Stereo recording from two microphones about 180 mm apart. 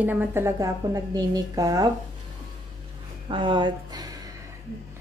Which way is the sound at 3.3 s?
25° right (ahead or behind).